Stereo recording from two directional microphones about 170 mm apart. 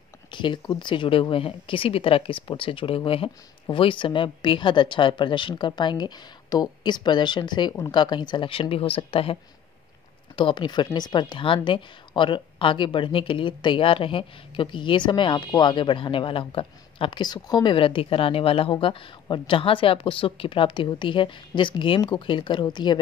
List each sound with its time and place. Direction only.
0.3 s a woman's voice: 30° left (ahead or behind)